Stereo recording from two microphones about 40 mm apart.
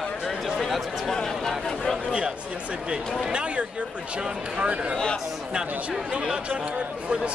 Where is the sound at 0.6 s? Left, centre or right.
Centre.